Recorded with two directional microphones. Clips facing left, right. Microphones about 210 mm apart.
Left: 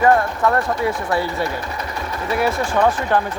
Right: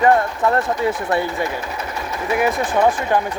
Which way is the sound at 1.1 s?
20° right (ahead or behind).